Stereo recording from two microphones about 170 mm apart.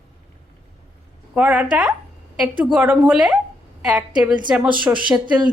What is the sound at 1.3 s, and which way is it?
A woman's voice, 10° right (ahead or behind).